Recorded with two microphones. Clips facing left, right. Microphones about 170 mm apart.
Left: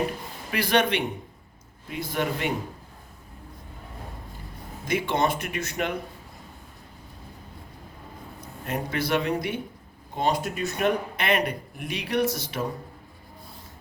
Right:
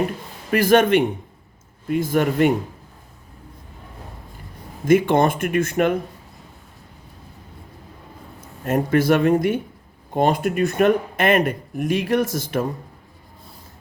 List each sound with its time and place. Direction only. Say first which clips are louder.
0.5 s speech: right 9 dB; 45° right (ahead or behind)
4.9 s speech: right 9 dB; 50° right (ahead or behind)
8.6 s speech: right 11 dB; 50° right (ahead or behind)